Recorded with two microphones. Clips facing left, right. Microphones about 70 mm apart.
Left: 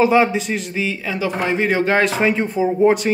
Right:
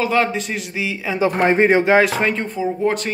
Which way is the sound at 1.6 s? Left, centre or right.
Right.